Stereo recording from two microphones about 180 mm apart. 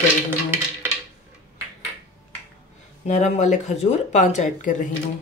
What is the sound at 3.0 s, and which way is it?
Speech, 40° left (ahead or behind).